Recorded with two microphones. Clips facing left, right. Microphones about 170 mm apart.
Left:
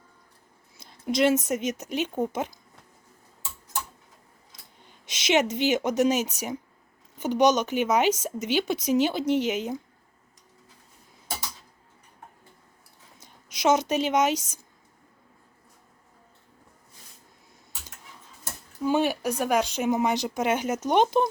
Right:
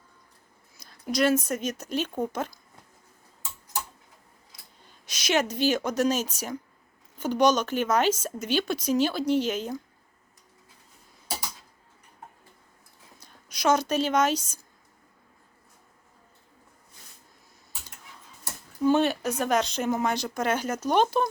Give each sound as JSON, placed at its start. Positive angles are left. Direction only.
{"t": 0.8, "sound": "speech", "side_deg": 20}
{"t": 5.0, "sound": "a woman's voice", "side_deg": 20}
{"t": 13.2, "sound": "speech", "side_deg": 20}
{"t": 18.8, "sound": "a woman's voice", "side_deg": 10}